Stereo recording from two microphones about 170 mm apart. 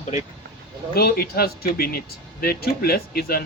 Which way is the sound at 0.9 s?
65° left (ahead or behind).